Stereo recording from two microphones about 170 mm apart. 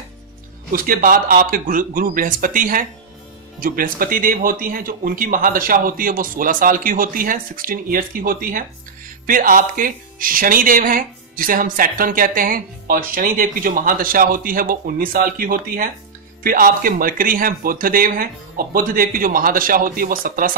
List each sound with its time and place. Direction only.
0.7 s speech: 55° right (ahead or behind)